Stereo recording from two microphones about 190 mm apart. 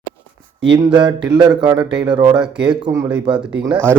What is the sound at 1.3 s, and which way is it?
A man's voice, 20° right (ahead or behind).